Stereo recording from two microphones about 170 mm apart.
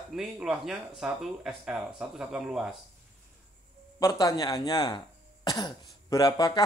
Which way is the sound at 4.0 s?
20° left (ahead or behind).